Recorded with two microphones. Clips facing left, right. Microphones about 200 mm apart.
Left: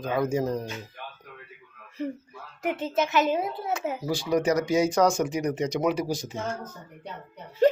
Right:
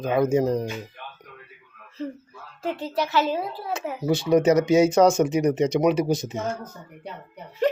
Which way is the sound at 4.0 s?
25° right (ahead or behind).